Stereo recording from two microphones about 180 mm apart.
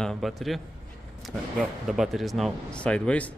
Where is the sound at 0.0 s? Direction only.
Centre (ahead or behind).